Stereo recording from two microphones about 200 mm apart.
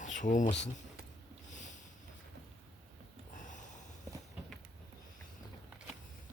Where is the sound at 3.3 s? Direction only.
40° left (ahead or behind).